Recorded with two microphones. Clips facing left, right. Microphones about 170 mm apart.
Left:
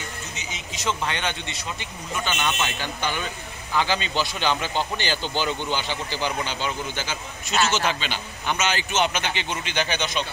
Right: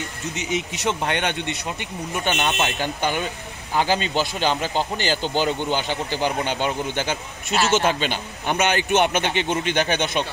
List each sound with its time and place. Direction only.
0.4 s speech: 65° right (ahead or behind)
2.4 s a man's voice: 50° right (ahead or behind)